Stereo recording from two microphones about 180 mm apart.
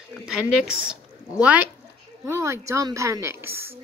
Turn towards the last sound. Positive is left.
turn(degrees=-15)  # may be behind; listen again after turning